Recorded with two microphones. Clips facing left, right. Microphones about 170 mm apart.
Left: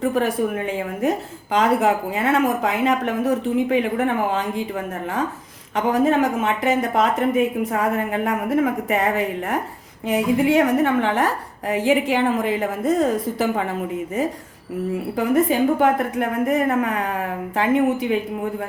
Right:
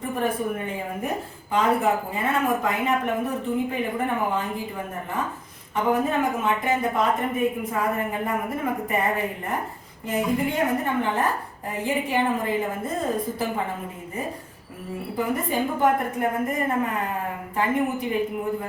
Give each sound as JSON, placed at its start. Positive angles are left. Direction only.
{"t": 0.0, "sound": "speech", "side_deg": 90}
{"t": 5.7, "sound": "speech", "side_deg": 90}
{"t": 15.1, "sound": "speech", "side_deg": 90}